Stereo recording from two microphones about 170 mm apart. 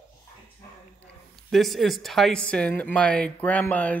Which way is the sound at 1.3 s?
Centre (ahead or behind).